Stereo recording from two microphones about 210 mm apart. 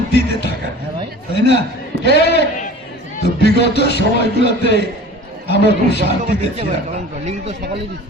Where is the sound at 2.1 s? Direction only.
50° left (ahead or behind).